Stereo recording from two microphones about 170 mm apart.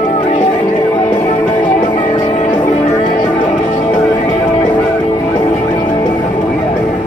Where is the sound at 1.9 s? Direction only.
45° left (ahead or behind).